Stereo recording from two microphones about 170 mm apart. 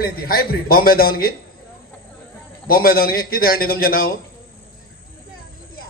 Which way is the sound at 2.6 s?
60° left (ahead or behind).